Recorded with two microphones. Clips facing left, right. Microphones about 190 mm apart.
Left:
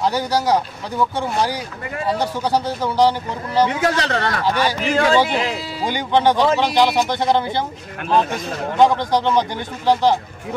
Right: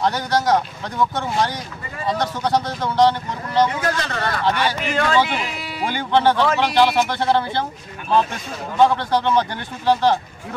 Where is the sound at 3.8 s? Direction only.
75° left (ahead or behind).